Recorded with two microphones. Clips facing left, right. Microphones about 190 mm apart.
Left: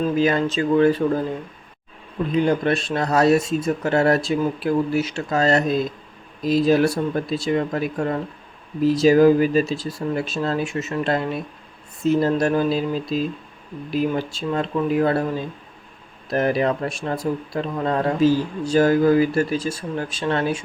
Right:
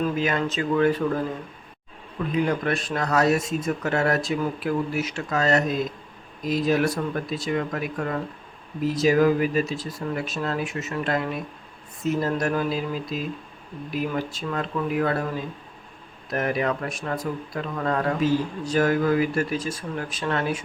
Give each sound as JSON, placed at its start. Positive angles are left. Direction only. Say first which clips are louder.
{"t": 0.2, "sound": "speech", "louder": "left 5 dB", "side_deg": 30}
{"t": 2.3, "sound": "speech", "louder": "left 5 dB", "side_deg": 30}
{"t": 16.3, "sound": "speech", "louder": "left 5 dB", "side_deg": 30}